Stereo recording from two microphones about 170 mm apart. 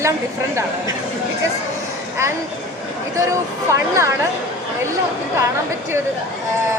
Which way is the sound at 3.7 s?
15° right (ahead or behind).